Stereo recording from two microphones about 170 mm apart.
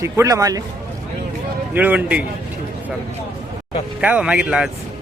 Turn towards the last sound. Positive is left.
turn(degrees=-5)  # may be behind; listen again after turning